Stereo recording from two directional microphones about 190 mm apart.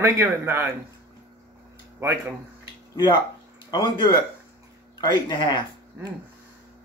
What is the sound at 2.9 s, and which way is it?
Speech, 20° left (ahead or behind).